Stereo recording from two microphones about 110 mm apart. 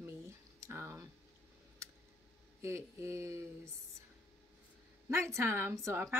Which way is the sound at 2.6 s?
25° right (ahead or behind).